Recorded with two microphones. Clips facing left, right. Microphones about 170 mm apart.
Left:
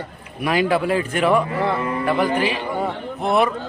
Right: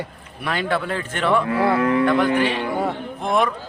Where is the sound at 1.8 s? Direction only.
90° right.